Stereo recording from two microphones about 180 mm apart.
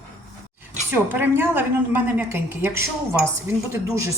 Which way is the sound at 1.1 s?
10° right (ahead or behind).